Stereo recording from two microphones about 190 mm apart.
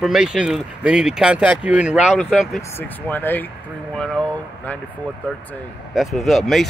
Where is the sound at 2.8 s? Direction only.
10° left (ahead or behind).